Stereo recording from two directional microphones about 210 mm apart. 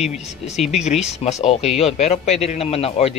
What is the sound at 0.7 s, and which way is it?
A man's voice, 30° left (ahead or behind).